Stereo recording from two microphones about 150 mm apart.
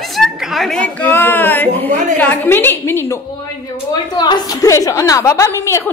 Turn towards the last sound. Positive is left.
turn(degrees=20)  # may be behind; listen again after turning